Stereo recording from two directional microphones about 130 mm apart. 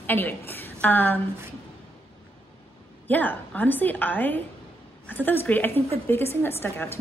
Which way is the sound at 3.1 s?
15° left (ahead or behind).